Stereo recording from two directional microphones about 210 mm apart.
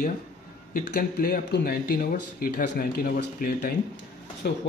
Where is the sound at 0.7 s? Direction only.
50° left (ahead or behind).